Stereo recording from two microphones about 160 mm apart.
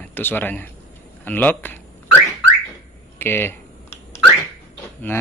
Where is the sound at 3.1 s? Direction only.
15° left (ahead or behind).